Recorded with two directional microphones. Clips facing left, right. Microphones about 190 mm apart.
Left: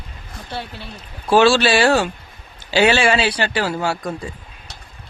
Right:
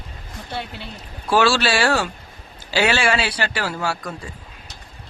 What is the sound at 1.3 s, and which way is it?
Speech, 20° left (ahead or behind).